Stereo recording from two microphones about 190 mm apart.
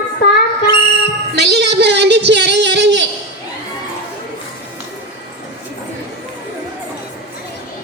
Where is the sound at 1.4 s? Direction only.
60° right (ahead or behind).